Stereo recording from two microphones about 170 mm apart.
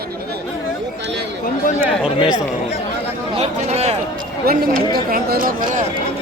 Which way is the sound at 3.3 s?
40° right (ahead or behind).